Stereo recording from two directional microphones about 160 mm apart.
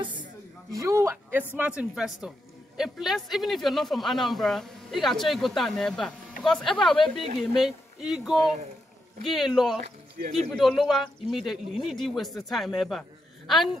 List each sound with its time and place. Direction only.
0.0 s a sound: 30° right (ahead or behind); by 1.4 s 15° right (ahead or behind)
1.6 s speech: 5° right (ahead or behind)
9.8 s speech: 65° right (ahead or behind)
10.5 s speech: centre (ahead or behind)